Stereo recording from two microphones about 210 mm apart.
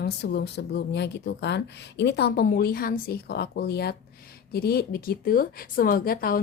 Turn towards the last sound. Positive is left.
turn(degrees=45)  # may be behind; listen again after turning